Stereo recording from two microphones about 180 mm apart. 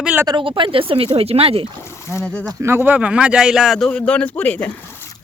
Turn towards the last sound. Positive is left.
turn(degrees=10)  # may be behind; listen again after turning